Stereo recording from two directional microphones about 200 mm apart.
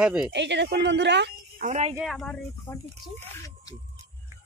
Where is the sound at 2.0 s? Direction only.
Centre (ahead or behind).